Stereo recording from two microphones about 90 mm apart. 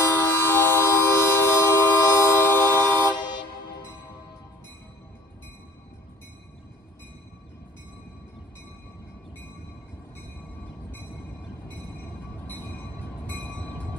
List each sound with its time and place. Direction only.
0.0 s train: 30° left (ahead or behind)
11.6 s train: 20° left (ahead or behind)